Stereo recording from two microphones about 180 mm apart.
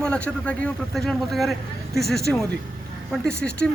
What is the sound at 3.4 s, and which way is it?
Speech, 5° left (ahead or behind).